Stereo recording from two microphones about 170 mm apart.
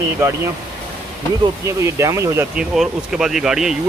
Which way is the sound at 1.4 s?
20° right (ahead or behind).